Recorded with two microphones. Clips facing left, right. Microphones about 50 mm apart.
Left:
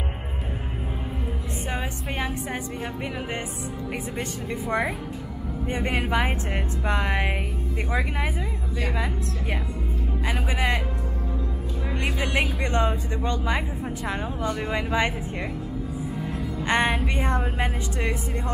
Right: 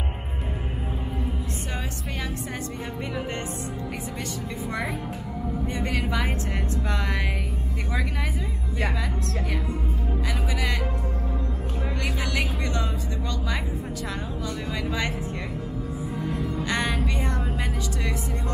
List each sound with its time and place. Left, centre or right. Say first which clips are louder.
4.6 s speech: left 5 dB; left
12.2 s speech: left 5 dB; left
16.3 s music: left 2 dB; left
17.0 s speech: left 3 dB; left